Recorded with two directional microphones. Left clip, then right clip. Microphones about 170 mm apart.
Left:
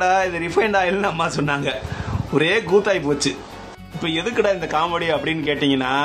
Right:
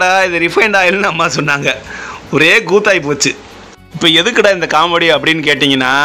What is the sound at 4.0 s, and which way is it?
A man's voice, 35° right (ahead or behind).